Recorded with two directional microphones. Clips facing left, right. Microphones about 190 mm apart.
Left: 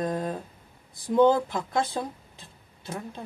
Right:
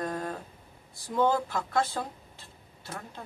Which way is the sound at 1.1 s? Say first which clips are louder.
Left 6 dB; 20° left (ahead or behind).